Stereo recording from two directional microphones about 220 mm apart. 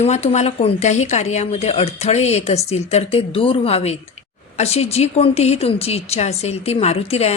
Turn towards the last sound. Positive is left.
turn(degrees=25)  # may be behind; listen again after turning